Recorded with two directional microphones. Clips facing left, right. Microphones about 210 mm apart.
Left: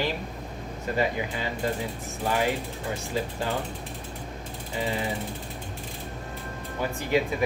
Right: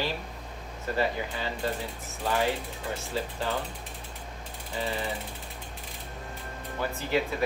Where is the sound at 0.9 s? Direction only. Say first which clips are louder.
Left 2 dB; 15° left (ahead or behind).